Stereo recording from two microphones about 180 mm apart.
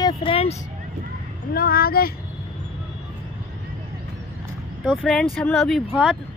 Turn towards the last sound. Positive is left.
turn(degrees=-10)  # may be behind; listen again after turning